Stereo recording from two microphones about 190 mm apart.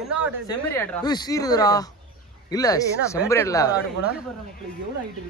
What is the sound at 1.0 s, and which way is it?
Speech, 20° left (ahead or behind).